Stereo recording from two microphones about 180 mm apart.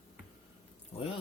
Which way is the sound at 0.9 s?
30° left (ahead or behind).